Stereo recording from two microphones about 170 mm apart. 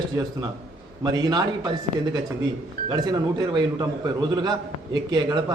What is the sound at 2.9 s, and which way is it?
A man's voice, 25° right (ahead or behind).